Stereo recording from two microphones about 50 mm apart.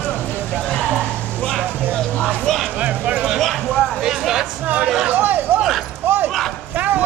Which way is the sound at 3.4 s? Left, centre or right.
Centre.